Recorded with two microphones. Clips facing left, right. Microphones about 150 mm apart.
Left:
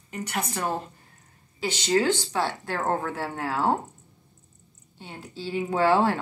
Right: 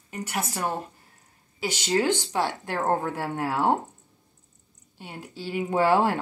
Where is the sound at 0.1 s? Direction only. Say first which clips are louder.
Even; 5° right (ahead or behind).